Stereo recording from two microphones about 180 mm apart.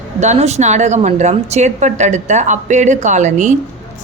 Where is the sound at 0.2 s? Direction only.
40° right (ahead or behind).